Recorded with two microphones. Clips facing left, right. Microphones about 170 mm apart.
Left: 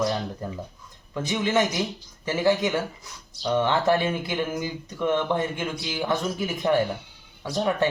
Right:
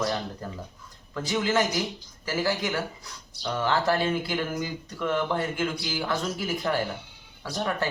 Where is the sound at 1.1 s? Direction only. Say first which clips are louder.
Left 2 dB; 20° left (ahead or behind).